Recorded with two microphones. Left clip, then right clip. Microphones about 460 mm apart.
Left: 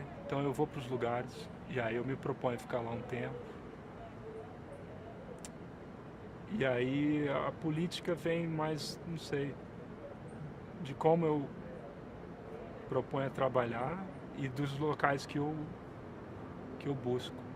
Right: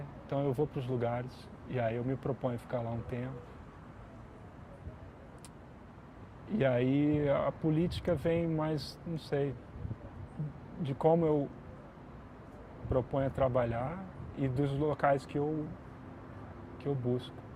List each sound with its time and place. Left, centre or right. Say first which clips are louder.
0.3 s speech: right 2 dB; right
6.6 s speech: right 3 dB; right
10.8 s speech: right 2 dB; right
12.9 s speech: right 4 dB; right
16.8 s speech: right 2 dB; right